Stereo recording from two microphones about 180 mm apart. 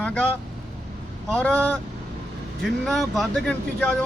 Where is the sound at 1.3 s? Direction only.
5° left (ahead or behind).